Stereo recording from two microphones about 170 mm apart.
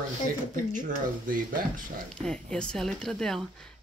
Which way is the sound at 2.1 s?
5° left (ahead or behind).